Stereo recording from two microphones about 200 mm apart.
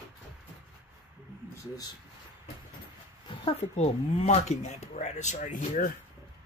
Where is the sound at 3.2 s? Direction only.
30° left (ahead or behind).